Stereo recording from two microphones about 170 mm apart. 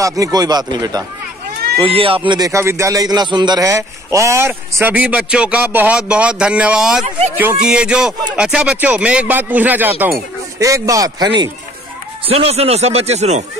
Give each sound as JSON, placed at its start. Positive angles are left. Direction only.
{"t": 0.0, "sound": "speech", "side_deg": -20}
{"t": 12.3, "sound": "speech", "side_deg": -35}